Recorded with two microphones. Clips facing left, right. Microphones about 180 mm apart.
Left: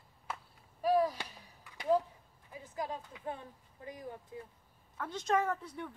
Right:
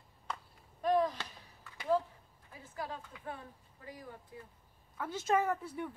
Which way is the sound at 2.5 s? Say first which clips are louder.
Left 3 dB; 15° left (ahead or behind).